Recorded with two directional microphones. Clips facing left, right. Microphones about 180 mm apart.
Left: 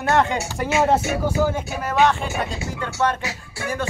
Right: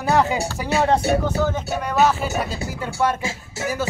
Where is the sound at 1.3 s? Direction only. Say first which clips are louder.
Even; 10° left (ahead or behind).